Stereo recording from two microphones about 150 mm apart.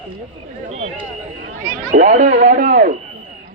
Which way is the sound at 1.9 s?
55° right (ahead or behind).